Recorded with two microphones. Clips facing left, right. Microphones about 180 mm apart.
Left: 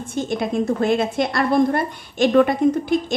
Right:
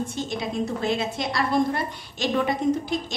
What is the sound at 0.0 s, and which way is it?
A woman's voice, 50° left (ahead or behind).